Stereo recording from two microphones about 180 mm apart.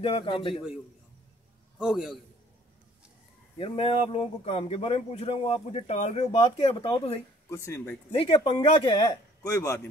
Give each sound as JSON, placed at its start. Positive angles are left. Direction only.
{"t": 0.0, "sound": "speech", "side_deg": 30}
{"t": 1.8, "sound": "a man's voice", "side_deg": -5}
{"t": 3.5, "sound": "speech", "side_deg": 30}
{"t": 7.4, "sound": "speech", "side_deg": 15}
{"t": 8.1, "sound": "speech", "side_deg": 30}